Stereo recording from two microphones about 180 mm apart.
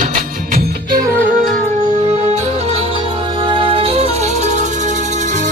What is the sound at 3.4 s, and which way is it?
Music, 25° right (ahead or behind).